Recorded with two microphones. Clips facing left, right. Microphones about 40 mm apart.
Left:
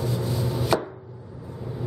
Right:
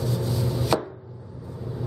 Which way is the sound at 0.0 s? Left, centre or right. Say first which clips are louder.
Even; centre.